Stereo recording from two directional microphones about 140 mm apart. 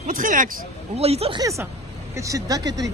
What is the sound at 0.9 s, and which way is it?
Speech, 45° right (ahead or behind).